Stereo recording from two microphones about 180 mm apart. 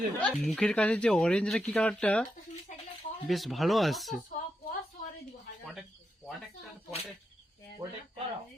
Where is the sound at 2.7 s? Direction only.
40° left (ahead or behind).